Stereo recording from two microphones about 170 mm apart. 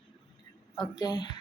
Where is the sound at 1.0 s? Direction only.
25° left (ahead or behind).